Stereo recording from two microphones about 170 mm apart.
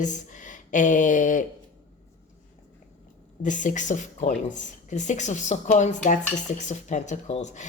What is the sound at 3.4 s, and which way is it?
A woman's voice, 50° left (ahead or behind).